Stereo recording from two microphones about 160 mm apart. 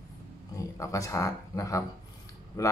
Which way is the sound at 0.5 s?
20° left (ahead or behind).